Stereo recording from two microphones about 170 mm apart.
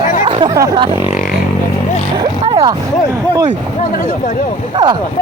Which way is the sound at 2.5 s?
30° right (ahead or behind).